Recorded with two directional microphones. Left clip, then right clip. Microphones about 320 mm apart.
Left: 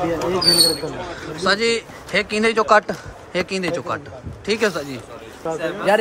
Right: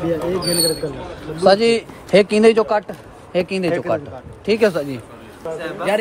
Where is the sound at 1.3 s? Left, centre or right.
Centre.